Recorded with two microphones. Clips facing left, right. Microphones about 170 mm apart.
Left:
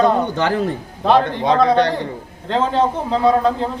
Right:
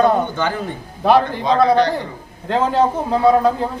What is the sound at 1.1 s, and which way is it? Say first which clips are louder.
Speech: right 1 dB; 10° right (ahead or behind).